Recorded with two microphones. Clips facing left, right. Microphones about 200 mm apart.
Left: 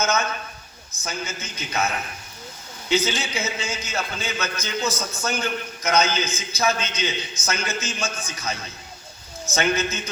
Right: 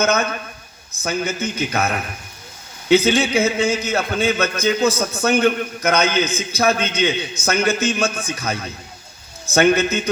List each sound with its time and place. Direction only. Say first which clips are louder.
0.0 s a man's voice: right 5 dB; 60° right (ahead or behind)